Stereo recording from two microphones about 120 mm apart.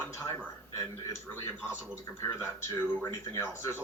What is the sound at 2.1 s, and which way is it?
Speech, 20° left (ahead or behind).